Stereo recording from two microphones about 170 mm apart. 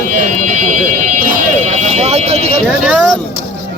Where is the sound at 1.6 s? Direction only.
45° right (ahead or behind).